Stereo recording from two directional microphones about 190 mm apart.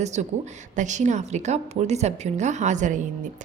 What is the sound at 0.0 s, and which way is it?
A woman's voice, 35° right (ahead or behind).